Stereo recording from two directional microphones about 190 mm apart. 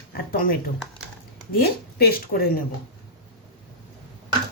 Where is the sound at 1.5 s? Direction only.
55° left (ahead or behind).